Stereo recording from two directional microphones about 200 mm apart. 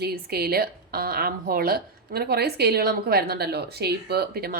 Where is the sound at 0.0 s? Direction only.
50° right (ahead or behind).